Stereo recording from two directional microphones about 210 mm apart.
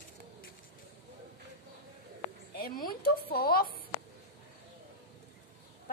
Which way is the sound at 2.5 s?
45° left (ahead or behind).